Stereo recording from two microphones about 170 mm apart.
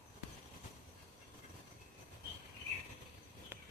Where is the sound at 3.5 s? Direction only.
15° right (ahead or behind).